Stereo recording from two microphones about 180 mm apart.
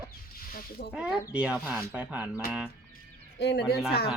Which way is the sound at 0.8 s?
55° left (ahead or behind).